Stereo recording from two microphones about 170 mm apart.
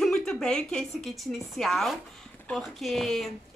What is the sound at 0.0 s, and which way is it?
A woman's voice, 5° left (ahead or behind).